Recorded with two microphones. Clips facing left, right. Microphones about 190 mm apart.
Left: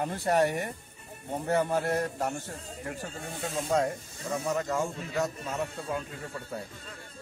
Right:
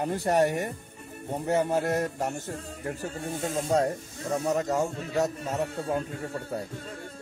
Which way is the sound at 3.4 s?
40° right (ahead or behind).